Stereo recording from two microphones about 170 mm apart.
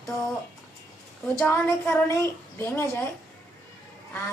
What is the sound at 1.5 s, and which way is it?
A woman's voice, 15° left (ahead or behind).